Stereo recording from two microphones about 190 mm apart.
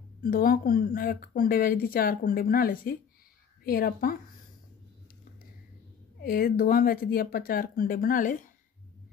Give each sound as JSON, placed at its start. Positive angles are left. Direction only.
{"t": 0.2, "sound": "speech", "side_deg": 50}
{"t": 6.2, "sound": "speech", "side_deg": 50}